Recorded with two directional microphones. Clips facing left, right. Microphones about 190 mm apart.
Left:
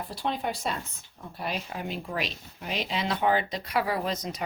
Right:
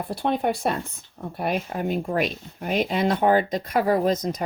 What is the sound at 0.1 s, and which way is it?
Speech, 60° right (ahead or behind).